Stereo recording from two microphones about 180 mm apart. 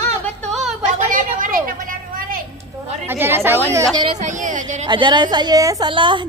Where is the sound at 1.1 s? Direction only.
50° right (ahead or behind).